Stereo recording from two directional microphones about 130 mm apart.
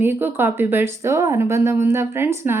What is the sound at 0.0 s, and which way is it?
A woman's voice, 15° right (ahead or behind).